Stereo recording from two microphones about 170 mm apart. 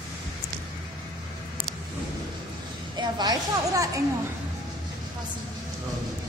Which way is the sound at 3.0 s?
25° right (ahead or behind).